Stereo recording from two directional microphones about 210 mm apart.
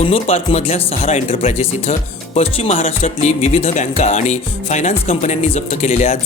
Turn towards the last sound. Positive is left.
turn(degrees=35)  # may be behind; listen again after turning